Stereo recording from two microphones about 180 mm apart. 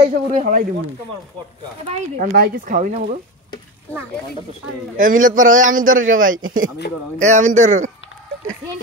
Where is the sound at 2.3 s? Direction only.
55° right (ahead or behind).